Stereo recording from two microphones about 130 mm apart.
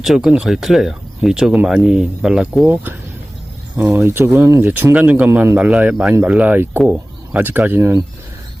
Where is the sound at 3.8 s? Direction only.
15° right (ahead or behind).